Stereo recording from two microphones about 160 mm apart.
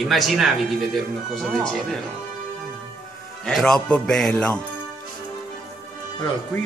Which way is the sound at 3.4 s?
5° left (ahead or behind).